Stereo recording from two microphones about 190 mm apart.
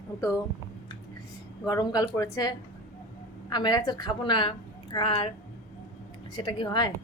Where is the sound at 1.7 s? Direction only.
20° left (ahead or behind).